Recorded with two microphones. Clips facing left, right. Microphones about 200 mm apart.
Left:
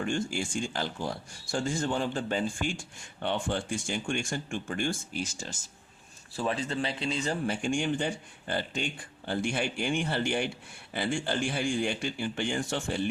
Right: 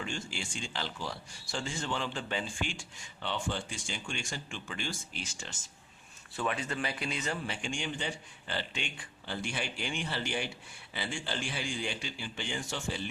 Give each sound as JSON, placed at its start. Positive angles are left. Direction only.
{"t": 0.0, "sound": "a man's voice", "side_deg": 50}
{"t": 7.4, "sound": "a man's voice", "side_deg": 45}